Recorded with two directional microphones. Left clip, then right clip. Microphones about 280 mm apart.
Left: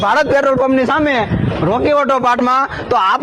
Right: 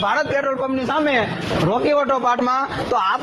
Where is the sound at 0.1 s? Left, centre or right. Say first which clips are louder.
Left 7 dB; left.